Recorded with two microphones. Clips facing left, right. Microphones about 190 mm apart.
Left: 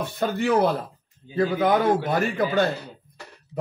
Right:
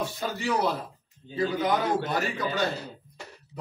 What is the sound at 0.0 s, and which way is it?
A man's voice, 55° left (ahead or behind).